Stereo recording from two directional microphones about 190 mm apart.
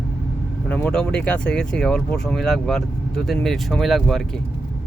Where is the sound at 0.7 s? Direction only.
5° left (ahead or behind).